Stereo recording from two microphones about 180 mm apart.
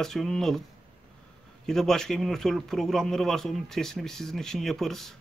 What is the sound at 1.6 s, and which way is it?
Speech, 5° left (ahead or behind).